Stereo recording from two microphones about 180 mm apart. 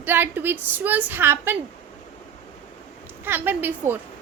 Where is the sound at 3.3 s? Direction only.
10° right (ahead or behind).